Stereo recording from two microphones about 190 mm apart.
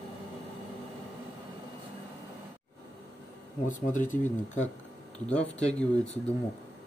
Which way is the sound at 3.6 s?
40° left (ahead or behind).